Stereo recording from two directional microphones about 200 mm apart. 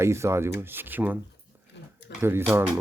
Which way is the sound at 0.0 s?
15° right (ahead or behind).